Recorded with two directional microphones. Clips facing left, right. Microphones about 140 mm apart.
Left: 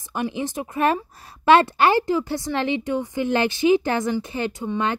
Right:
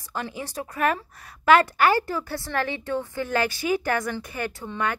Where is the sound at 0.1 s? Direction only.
20° left (ahead or behind).